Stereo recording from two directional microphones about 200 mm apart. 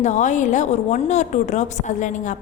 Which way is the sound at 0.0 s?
40° left (ahead or behind).